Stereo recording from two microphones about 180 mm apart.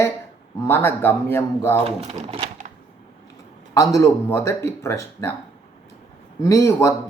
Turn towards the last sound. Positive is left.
turn(degrees=15)  # may be behind; listen again after turning